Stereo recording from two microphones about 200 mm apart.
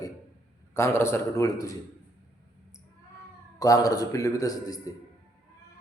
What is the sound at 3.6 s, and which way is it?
A man's voice, 15° left (ahead or behind).